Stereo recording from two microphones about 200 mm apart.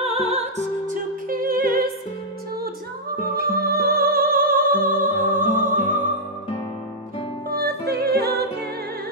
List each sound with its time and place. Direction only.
0.0 s music: 30° right (ahead or behind); by 1.9 s 45° right (ahead or behind)
3.3 s music: 50° right (ahead or behind)
7.5 s music: 50° right (ahead or behind)